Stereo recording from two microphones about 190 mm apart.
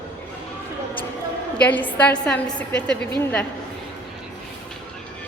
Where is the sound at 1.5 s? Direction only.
10° left (ahead or behind).